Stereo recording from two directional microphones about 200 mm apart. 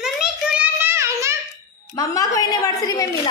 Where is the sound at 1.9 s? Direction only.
15° left (ahead or behind).